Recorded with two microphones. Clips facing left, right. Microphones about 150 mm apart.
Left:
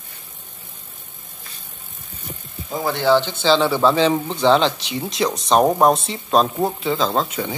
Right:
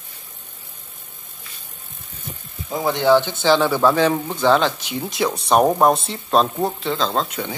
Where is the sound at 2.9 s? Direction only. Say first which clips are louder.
Right 1 dB; 15° right (ahead or behind).